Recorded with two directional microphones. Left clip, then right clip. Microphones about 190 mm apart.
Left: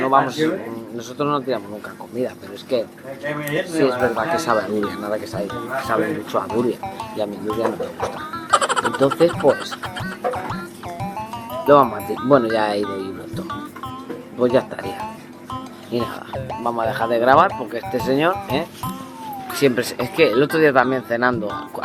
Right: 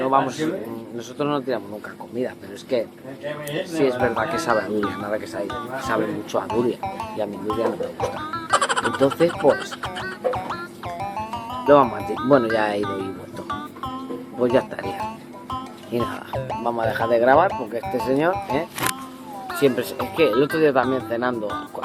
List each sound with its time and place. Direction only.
0.0 s speech: 10° left (ahead or behind)
19.6 s speech: 35° left (ahead or behind)